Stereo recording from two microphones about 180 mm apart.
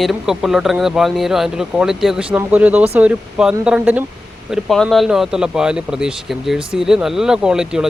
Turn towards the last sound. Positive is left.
turn(degrees=-5)  # may be behind; listen again after turning